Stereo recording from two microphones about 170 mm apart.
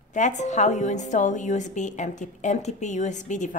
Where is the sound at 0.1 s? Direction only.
45° left (ahead or behind).